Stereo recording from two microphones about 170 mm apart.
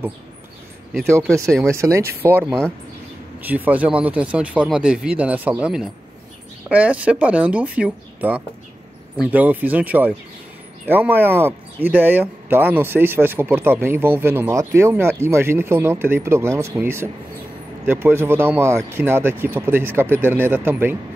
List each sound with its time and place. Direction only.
1.3 s speech: 15° right (ahead or behind)